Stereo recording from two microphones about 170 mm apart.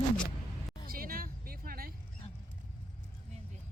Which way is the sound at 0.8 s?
60° right (ahead or behind).